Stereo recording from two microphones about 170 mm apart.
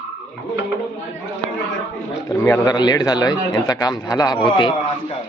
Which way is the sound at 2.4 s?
20° left (ahead or behind).